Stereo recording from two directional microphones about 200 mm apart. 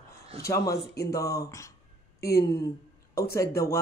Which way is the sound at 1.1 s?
15° left (ahead or behind).